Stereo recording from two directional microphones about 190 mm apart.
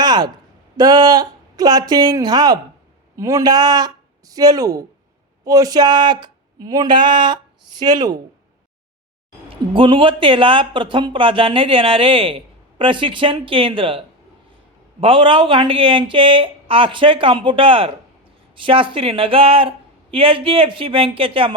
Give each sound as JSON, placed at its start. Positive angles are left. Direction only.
{"t": 0.0, "sound": "a sound", "side_deg": -20}
{"t": 0.8, "sound": "speech", "side_deg": -20}
{"t": 9.7, "sound": "speech", "side_deg": -25}
{"t": 15.0, "sound": "speech", "side_deg": -25}